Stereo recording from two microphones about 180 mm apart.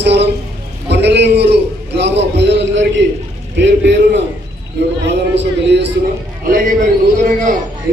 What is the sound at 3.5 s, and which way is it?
Speech, 70° right (ahead or behind).